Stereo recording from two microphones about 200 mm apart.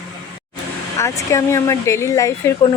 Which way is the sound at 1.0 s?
15° left (ahead or behind).